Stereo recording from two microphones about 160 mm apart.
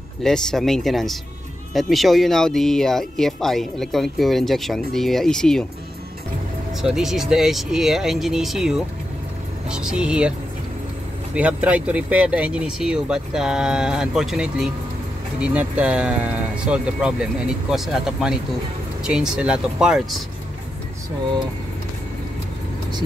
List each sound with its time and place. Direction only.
0.2 s speech: 5° left (ahead or behind)
6.8 s speech: 5° right (ahead or behind)
11.3 s speech: 10° right (ahead or behind)